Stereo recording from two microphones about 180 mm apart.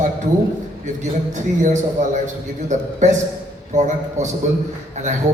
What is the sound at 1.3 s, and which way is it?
A man's voice, 40° right (ahead or behind).